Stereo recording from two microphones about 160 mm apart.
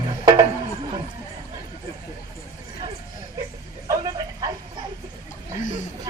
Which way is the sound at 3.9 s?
20° right (ahead or behind).